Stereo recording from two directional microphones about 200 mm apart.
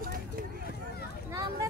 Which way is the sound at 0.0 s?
45° right (ahead or behind).